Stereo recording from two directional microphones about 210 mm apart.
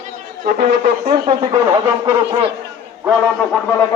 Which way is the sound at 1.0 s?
20° right (ahead or behind).